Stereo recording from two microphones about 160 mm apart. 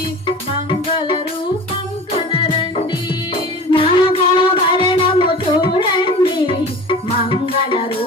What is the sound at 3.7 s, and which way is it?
Music, 35° left (ahead or behind).